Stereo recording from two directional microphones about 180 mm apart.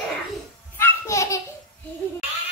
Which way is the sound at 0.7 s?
15° left (ahead or behind).